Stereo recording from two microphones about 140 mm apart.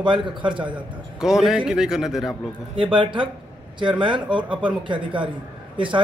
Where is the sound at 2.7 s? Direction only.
40° right (ahead or behind).